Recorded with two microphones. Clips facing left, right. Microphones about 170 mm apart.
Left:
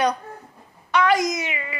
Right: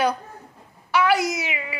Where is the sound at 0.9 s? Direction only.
10° right (ahead or behind).